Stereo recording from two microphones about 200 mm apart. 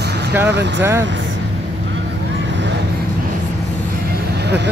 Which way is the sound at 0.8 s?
15° right (ahead or behind).